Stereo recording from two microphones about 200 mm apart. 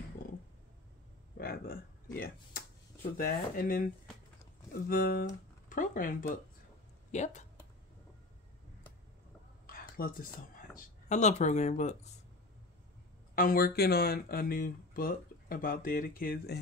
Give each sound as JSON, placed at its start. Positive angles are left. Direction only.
{"t": 1.4, "sound": "a sound", "side_deg": 50}
{"t": 2.1, "sound": "speech", "side_deg": 45}
{"t": 9.7, "sound": "speech", "side_deg": 45}
{"t": 13.3, "sound": "speech", "side_deg": 45}